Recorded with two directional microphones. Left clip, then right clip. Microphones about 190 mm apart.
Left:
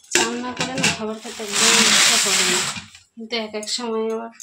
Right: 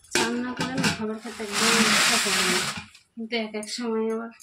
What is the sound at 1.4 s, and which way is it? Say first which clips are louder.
Speech: left 5 dB; 20° left (ahead or behind).